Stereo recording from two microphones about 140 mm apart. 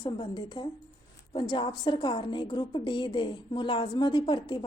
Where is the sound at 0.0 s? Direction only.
35° left (ahead or behind).